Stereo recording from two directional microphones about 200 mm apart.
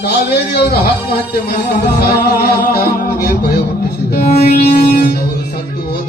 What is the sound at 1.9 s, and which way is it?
Music, 50° left (ahead or behind).